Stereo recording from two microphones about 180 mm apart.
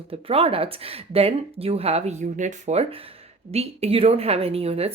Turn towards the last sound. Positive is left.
turn(degrees=-35)  # may be behind; listen again after turning